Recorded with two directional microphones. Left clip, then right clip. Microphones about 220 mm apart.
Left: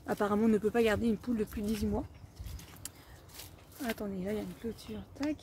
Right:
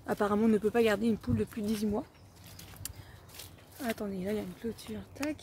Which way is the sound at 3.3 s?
Centre (ahead or behind).